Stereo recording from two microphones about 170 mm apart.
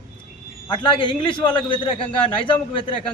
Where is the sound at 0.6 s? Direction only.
30° left (ahead or behind).